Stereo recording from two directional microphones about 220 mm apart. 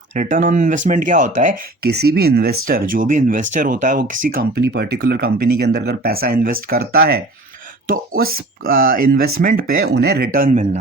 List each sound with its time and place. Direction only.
0.1 s speech: 35° right (ahead or behind)
8.2 s speech: 40° right (ahead or behind)